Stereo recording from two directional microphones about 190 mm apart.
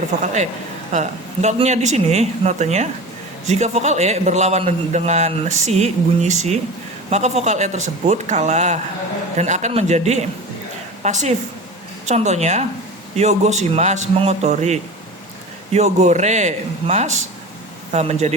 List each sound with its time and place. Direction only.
0.9 s a man's voice: 35° right (ahead or behind)